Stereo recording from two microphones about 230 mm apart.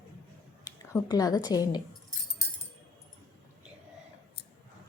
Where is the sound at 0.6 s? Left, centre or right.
Centre.